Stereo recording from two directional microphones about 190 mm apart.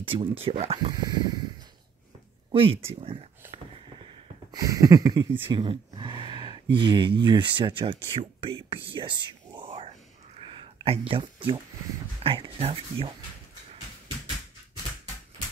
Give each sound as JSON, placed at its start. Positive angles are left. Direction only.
{"t": 0.0, "sound": "speech", "side_deg": -30}
{"t": 2.5, "sound": "speech", "side_deg": -30}
{"t": 3.5, "sound": "a sound", "side_deg": -25}
{"t": 12.2, "sound": "speech", "side_deg": -30}